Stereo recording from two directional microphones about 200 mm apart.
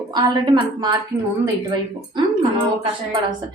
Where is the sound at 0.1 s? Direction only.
20° right (ahead or behind).